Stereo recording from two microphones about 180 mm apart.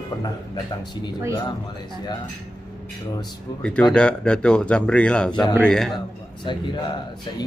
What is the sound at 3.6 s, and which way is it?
Speech, 5° left (ahead or behind).